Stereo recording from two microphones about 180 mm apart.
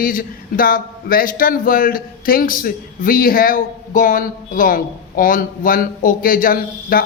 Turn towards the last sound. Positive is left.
turn(degrees=50)  # may be behind; listen again after turning